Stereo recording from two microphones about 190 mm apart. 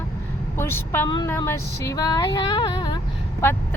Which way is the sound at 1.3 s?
15° left (ahead or behind).